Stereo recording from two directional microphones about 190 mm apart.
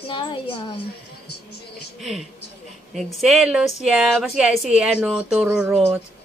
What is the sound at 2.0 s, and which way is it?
Speech, centre (ahead or behind).